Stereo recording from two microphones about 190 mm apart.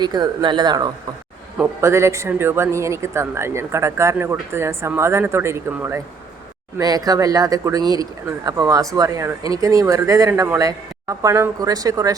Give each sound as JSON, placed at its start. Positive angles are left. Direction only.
{"t": 0.0, "sound": "a man's voice", "side_deg": -20}